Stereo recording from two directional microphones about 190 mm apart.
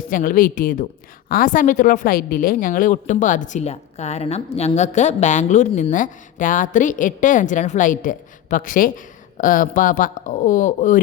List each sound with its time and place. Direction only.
0.1 s a woman's voice: 45° left (ahead or behind)